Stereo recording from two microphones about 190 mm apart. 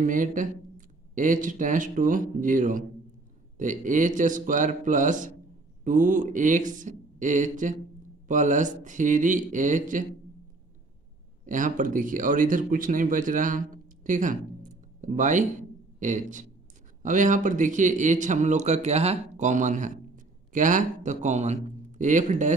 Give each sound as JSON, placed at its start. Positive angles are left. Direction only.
{"t": 0.0, "sound": "speech", "side_deg": -45}
{"t": 11.4, "sound": "speech", "side_deg": -45}